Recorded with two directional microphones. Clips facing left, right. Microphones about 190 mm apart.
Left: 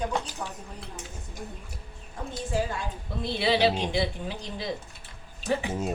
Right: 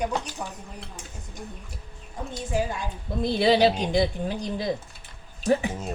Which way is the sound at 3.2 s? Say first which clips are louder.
Right 5 dB; 40° right (ahead or behind).